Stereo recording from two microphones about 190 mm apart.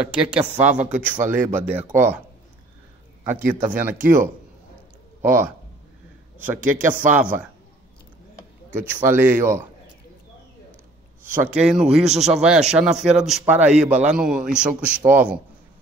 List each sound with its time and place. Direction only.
0.0 s speech: 5° right (ahead or behind)
3.3 s speech: 10° right (ahead or behind)
4.0 s speech: 45° right (ahead or behind)
5.2 s a man's voice: 10° right (ahead or behind)
9.0 s speech: 10° right (ahead or behind)
11.3 s a man's voice: 10° right (ahead or behind)